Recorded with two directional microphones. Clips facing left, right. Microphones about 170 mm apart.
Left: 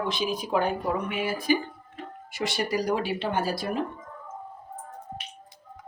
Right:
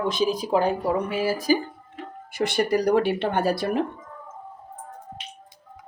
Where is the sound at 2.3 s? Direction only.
55° right (ahead or behind).